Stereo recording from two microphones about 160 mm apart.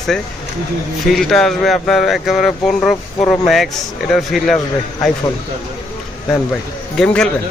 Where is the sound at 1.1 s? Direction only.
Centre (ahead or behind).